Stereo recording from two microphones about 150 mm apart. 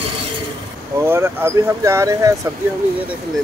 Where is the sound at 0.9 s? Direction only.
15° right (ahead or behind).